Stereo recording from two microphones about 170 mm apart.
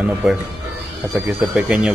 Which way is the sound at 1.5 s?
5° right (ahead or behind).